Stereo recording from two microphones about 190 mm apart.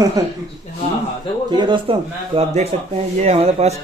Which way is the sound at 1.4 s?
25° right (ahead or behind).